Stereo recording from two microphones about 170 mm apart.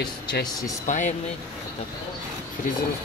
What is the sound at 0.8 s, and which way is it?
Speech, 45° left (ahead or behind).